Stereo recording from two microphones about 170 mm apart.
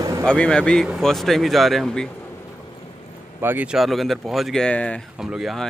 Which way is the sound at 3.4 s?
10° right (ahead or behind).